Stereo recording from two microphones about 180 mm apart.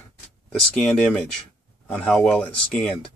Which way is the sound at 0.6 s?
5° left (ahead or behind).